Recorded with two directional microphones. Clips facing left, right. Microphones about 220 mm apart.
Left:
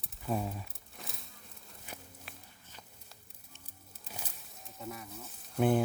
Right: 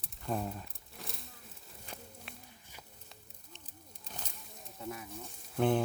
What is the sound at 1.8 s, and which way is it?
Walk, 5° left (ahead or behind).